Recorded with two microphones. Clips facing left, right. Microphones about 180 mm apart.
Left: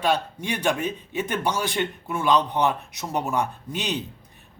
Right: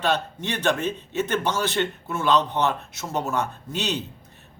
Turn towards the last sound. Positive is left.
turn(degrees=15)  # may be behind; listen again after turning